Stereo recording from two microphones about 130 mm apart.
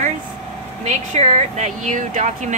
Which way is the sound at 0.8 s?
60° right (ahead or behind).